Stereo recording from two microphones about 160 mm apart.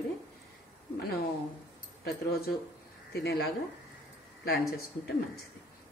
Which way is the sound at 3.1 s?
90° left.